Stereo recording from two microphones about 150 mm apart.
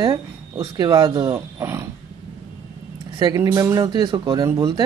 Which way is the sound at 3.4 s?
20° right (ahead or behind).